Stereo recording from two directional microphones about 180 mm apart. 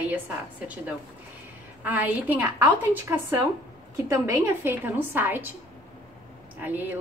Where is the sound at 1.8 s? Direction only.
10° right (ahead or behind).